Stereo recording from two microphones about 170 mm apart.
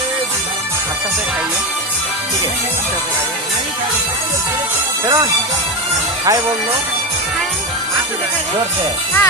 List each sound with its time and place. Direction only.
5.0 s music: 15° right (ahead or behind)